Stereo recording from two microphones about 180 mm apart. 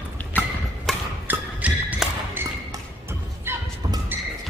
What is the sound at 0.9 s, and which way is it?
Music, centre (ahead or behind).